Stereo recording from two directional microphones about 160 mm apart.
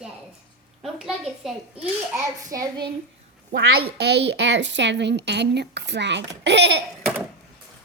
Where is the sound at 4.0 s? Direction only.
90° right.